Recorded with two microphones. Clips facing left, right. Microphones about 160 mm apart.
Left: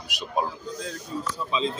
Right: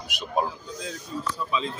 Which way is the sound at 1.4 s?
25° left (ahead or behind).